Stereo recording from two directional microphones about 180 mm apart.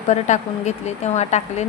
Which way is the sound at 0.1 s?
40° left (ahead or behind).